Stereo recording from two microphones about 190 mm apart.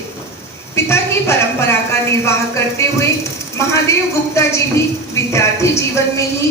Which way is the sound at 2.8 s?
15° left (ahead or behind).